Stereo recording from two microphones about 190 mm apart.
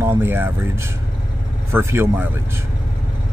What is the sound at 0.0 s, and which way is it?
Speech, 10° right (ahead or behind).